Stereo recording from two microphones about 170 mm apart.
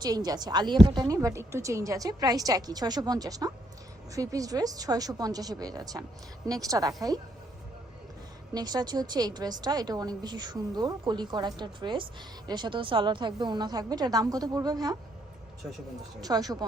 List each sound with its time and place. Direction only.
0.0 s a woman's voice: 25° right (ahead or behind)
8.5 s a woman's voice: 25° right (ahead or behind)
16.2 s a woman's voice: 20° right (ahead or behind)